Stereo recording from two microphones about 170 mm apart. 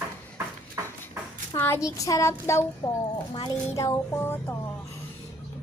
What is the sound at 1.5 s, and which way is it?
Speech, 15° left (ahead or behind).